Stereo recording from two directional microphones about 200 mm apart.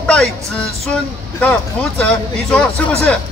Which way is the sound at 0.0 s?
5° left (ahead or behind).